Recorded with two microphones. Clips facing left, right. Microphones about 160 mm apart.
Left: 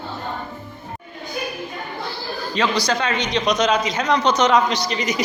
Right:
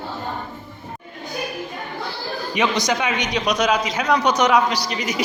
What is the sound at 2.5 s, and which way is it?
A man's voice, 20° right (ahead or behind).